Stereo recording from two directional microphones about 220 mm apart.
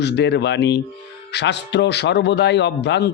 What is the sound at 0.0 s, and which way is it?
A man's voice, 50° left (ahead or behind).